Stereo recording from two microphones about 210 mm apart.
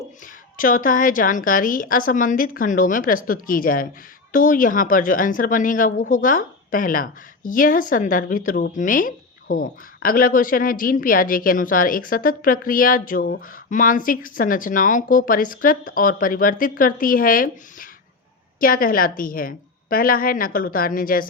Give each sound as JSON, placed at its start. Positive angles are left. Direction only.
{"t": 0.5, "sound": "a woman's voice", "side_deg": 40}